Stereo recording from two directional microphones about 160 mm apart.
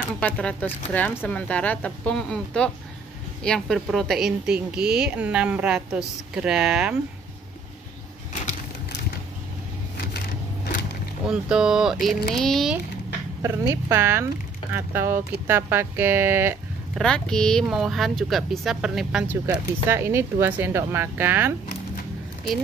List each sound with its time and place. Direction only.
0.2 s speech: 5° left (ahead or behind)
11.2 s speech: 5° right (ahead or behind)
13.4 s speech: 15° right (ahead or behind)
17.0 s speech: 5° left (ahead or behind)
19.4 s speech: 15° right (ahead or behind)